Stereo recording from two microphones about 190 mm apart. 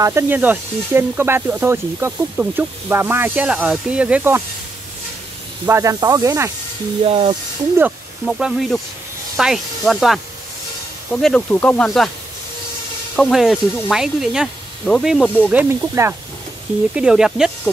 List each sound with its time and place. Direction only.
0.0 s speech: 10° right (ahead or behind)
5.7 s speech: 15° right (ahead or behind)
7.1 s speech: 30° right (ahead or behind)
8.3 s speech: centre (ahead or behind)
13.1 s speech: centre (ahead or behind)
15.5 s speech: 15° right (ahead or behind)
16.9 s speech: 5° right (ahead or behind)